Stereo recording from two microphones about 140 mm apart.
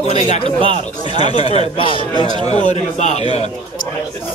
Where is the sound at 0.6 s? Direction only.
40° right (ahead or behind).